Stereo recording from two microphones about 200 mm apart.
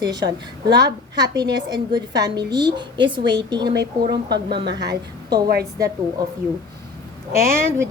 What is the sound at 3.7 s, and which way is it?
Speech, 55° right (ahead or behind).